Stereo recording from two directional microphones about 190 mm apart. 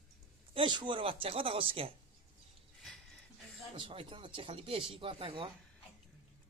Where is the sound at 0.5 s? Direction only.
25° right (ahead or behind).